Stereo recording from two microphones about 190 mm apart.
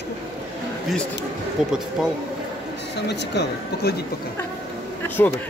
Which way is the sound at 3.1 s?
65° left (ahead or behind).